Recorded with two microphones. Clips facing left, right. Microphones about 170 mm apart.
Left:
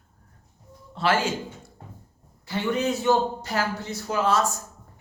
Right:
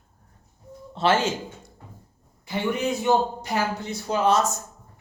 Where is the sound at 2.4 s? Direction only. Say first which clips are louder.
Even; 15° right (ahead or behind).